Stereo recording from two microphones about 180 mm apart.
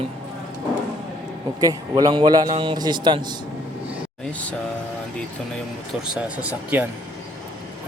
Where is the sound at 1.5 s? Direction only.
20° right (ahead or behind).